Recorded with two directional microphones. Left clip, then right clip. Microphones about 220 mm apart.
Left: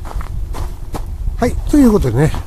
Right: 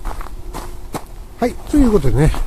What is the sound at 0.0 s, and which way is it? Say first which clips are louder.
Walk: even; 5° right (ahead or behind).